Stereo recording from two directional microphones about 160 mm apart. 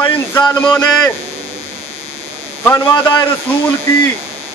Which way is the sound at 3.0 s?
30° left (ahead or behind).